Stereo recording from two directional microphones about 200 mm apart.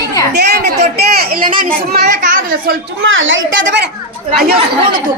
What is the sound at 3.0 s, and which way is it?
Speech, 75° right (ahead or behind).